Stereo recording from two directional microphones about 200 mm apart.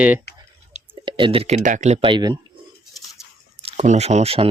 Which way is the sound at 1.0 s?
25° right (ahead or behind).